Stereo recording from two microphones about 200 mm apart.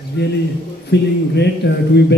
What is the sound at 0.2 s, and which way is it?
A man's voice, 55° left (ahead or behind).